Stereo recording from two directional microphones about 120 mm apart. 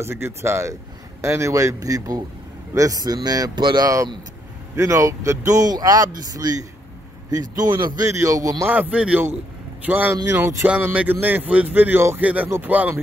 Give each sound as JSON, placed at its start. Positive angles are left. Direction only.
{"t": 0.0, "sound": "speech", "side_deg": -20}
{"t": 8.0, "sound": "speech", "side_deg": -25}
{"t": 8.6, "sound": "speech", "side_deg": -10}